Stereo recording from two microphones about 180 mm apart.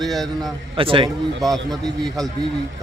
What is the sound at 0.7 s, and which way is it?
Speech, 30° right (ahead or behind).